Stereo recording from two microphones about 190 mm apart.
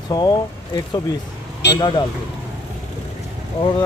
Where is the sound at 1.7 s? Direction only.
25° left (ahead or behind).